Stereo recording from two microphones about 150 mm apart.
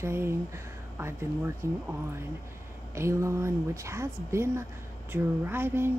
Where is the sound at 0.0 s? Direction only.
15° right (ahead or behind).